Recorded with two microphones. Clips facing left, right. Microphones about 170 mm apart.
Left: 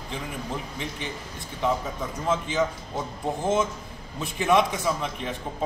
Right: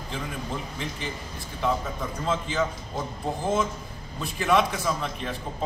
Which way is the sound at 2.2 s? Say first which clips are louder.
Left 2 dB; 15° left (ahead or behind).